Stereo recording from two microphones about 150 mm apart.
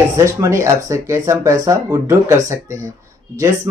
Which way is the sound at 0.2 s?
20° right (ahead or behind).